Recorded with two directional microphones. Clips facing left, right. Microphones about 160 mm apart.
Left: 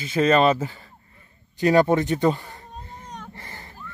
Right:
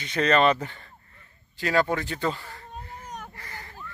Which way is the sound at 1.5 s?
20° left (ahead or behind).